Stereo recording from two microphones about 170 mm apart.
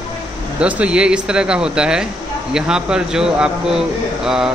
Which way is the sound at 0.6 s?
5° right (ahead or behind).